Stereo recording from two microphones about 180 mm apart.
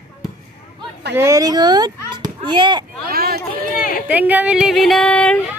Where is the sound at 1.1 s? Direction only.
15° right (ahead or behind).